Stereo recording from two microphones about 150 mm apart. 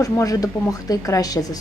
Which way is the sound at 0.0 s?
25° left (ahead or behind).